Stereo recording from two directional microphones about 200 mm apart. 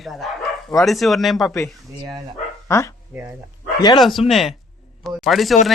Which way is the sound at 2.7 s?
15° left (ahead or behind).